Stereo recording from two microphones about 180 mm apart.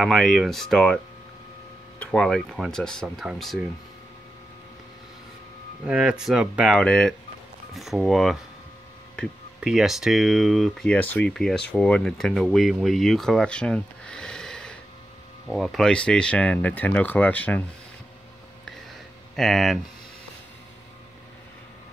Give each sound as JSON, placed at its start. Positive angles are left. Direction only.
{"t": 0.0, "sound": "speech", "side_deg": 0}
{"t": 5.9, "sound": "speech", "side_deg": -5}
{"t": 9.6, "sound": "speech", "side_deg": 0}
{"t": 19.3, "sound": "speech", "side_deg": 0}